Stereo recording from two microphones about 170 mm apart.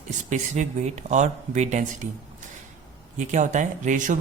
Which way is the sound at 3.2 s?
45° right (ahead or behind).